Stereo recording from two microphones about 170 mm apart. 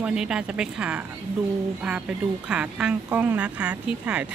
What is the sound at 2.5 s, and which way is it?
A woman's voice, 5° right (ahead or behind).